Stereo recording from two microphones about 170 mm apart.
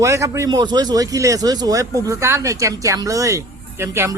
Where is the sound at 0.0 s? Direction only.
15° right (ahead or behind).